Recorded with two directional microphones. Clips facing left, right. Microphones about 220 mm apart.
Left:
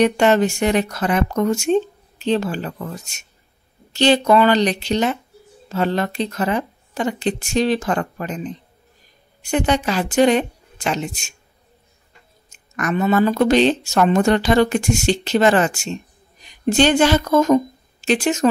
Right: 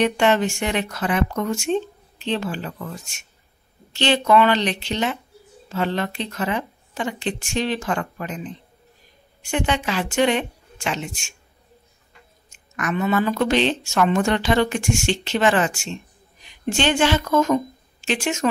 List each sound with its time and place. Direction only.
0.0 s a woman's voice: 40° left (ahead or behind)
3.9 s a woman's voice: 40° left (ahead or behind)
9.4 s a woman's voice: 40° left (ahead or behind)
12.5 s a woman's voice: 40° left (ahead or behind)